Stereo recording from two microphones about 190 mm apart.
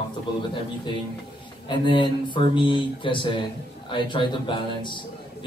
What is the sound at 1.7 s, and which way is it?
A man's voice, 25° left (ahead or behind).